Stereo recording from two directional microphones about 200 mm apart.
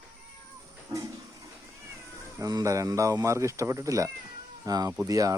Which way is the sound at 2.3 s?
15° right (ahead or behind).